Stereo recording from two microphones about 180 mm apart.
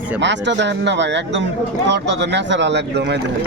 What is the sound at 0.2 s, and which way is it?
Speech, 80° right.